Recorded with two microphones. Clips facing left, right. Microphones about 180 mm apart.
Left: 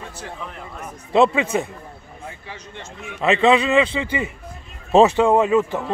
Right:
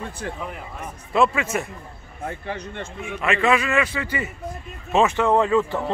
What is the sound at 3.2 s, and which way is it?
A man's voice, 25° left (ahead or behind).